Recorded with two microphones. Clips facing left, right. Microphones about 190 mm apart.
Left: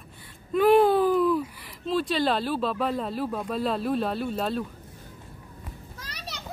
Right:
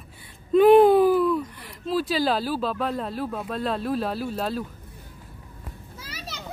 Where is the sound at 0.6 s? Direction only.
20° right (ahead or behind).